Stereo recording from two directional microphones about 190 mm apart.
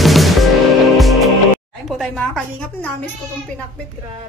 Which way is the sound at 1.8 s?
Centre (ahead or behind).